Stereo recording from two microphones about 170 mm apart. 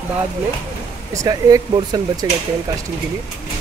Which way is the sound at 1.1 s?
20° right (ahead or behind).